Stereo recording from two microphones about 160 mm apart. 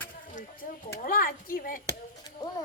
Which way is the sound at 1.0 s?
65° left (ahead or behind).